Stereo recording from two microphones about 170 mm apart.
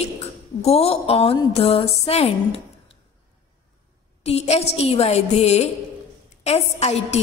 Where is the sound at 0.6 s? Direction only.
35° left (ahead or behind).